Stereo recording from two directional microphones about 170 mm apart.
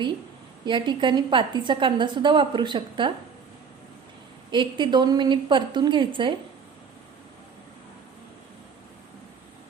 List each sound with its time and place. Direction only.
0.6 s a woman's voice: 25° right (ahead or behind)
4.5 s a woman's voice: 25° right (ahead or behind)